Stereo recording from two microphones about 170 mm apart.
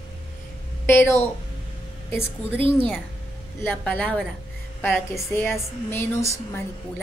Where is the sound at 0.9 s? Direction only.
15° left (ahead or behind).